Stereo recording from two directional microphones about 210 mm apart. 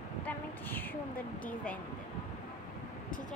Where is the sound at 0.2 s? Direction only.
10° left (ahead or behind).